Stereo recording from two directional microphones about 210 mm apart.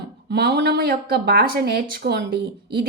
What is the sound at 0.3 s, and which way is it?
Speech, 50° right (ahead or behind).